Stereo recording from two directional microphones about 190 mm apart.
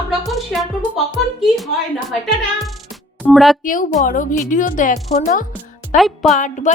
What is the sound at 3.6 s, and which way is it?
A woman's voice, 45° left (ahead or behind).